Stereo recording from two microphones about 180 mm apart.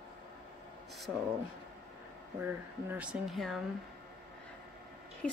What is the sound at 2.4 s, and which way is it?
A woman's voice, 10° right (ahead or behind).